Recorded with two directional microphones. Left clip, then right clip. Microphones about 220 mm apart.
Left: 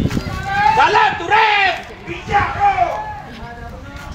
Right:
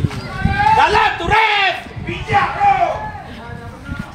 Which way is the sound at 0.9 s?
50° right (ahead or behind).